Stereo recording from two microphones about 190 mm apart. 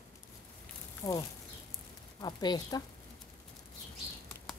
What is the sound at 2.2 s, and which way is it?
Speech, 20° left (ahead or behind).